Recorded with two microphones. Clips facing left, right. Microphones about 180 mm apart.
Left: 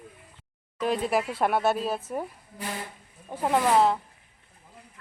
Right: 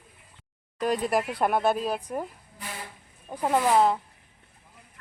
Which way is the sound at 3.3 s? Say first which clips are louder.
Even; centre (ahead or behind).